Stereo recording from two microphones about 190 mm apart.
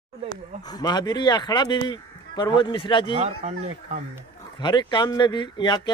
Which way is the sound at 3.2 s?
35° right (ahead or behind).